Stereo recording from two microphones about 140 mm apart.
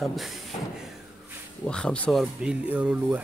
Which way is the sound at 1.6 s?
5° left (ahead or behind).